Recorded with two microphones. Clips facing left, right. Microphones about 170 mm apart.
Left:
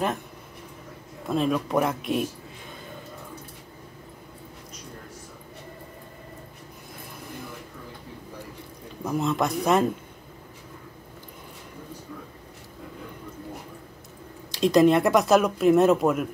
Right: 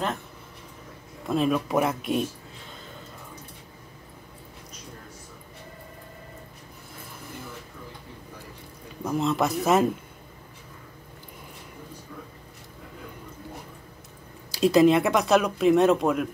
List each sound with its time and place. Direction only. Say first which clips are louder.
1.2 s speech: right 1 dB; centre (ahead or behind)
9.0 s speech: right 1 dB; centre (ahead or behind)
14.5 s speech: even; 5° right (ahead or behind)